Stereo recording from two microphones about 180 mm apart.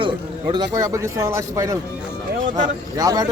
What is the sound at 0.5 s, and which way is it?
Speech, 20° right (ahead or behind).